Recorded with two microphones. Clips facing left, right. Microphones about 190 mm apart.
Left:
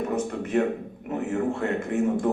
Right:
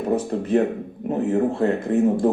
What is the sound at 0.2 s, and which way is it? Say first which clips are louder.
A man's voice: right 4 dB; 35° right (ahead or behind).